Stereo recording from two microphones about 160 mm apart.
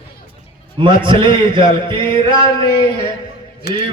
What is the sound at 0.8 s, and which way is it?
A man's voice, 30° right (ahead or behind).